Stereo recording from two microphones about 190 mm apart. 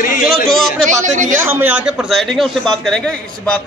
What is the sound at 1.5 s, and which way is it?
A man's voice, 10° right (ahead or behind).